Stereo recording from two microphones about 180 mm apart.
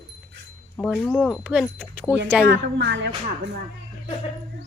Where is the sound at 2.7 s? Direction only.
75° right (ahead or behind).